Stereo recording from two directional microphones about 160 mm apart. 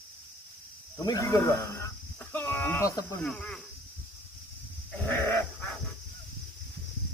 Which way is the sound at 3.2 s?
5° left (ahead or behind).